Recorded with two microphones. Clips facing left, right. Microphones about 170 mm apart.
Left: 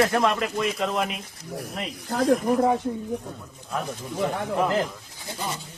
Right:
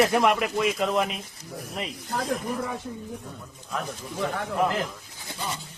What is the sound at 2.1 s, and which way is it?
Speech, 80° left.